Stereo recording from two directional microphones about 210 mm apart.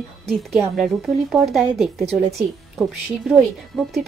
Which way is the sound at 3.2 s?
Centre (ahead or behind).